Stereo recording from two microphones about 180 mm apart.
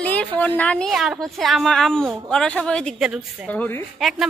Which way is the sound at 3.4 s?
10° left (ahead or behind).